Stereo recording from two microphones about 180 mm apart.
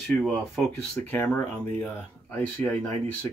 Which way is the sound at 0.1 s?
Centre (ahead or behind).